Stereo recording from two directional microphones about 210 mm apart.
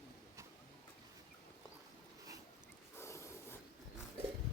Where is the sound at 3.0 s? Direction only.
15° left (ahead or behind).